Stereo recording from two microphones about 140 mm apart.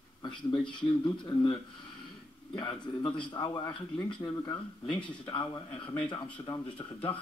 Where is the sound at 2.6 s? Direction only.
35° left (ahead or behind).